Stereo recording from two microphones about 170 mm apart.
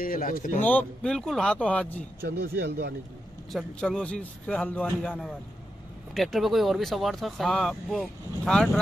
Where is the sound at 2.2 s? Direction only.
70° right (ahead or behind).